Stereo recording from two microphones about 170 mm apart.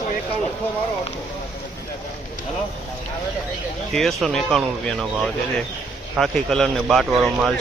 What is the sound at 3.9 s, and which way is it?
Speech, centre (ahead or behind).